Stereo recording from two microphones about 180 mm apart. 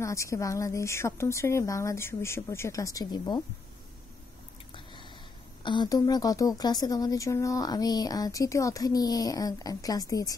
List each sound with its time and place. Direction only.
0.0 s speech: 15° left (ahead or behind)
5.6 s speech: 25° left (ahead or behind)